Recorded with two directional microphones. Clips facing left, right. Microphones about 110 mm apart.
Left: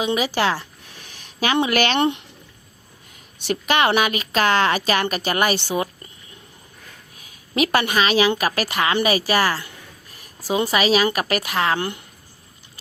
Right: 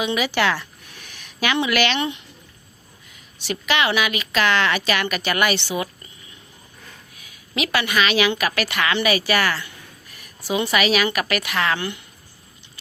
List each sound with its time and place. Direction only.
0.0 s a woman's voice: 35° left (ahead or behind)
1.1 s a sound: 35° left (ahead or behind)
1.5 s speech: 45° left (ahead or behind)
3.3 s a woman's voice: 50° left (ahead or behind)
7.5 s a woman's voice: 45° left (ahead or behind)